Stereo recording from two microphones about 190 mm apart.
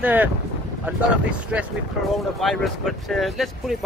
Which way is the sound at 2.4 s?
Centre (ahead or behind).